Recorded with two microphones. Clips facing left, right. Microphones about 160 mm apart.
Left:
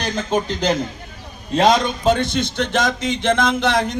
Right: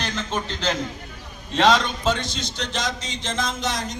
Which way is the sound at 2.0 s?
55° left (ahead or behind).